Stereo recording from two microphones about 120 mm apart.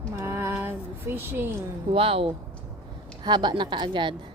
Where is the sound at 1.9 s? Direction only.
50° right (ahead or behind).